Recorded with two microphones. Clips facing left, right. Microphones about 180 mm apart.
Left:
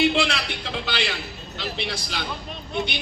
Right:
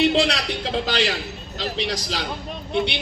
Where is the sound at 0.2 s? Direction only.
35° right (ahead or behind).